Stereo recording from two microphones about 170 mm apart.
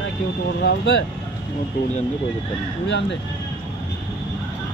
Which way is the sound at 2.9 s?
90° left.